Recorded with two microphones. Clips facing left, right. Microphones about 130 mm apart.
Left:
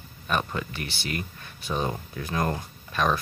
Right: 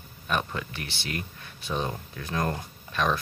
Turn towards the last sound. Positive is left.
turn(degrees=5)  # may be behind; listen again after turning